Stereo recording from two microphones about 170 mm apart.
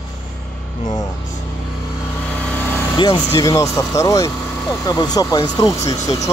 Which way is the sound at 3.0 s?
25° left (ahead or behind).